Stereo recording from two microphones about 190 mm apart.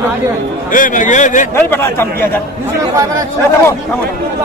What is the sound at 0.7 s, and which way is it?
Speech, 45° left (ahead or behind).